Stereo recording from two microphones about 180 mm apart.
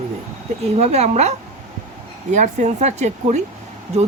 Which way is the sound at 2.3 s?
40° right (ahead or behind).